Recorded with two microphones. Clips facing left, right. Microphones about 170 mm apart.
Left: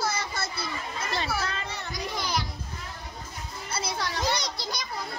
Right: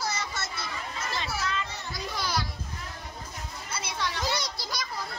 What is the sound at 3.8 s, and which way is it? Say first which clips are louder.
Children playing: left 1 dB; 35° left (ahead or behind).